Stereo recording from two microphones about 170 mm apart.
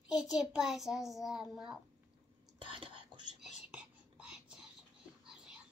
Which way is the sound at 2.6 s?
30° right (ahead or behind).